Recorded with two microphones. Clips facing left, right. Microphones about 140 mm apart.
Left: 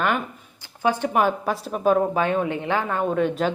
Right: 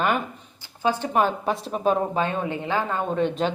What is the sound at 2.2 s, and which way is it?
Speech, 15° left (ahead or behind).